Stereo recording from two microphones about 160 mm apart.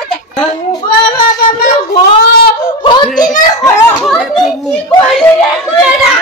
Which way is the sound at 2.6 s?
30° left (ahead or behind).